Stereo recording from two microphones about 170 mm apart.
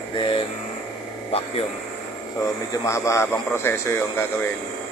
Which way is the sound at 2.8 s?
15° left (ahead or behind).